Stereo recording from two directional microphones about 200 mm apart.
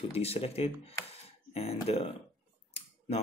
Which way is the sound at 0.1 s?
30° left (ahead or behind).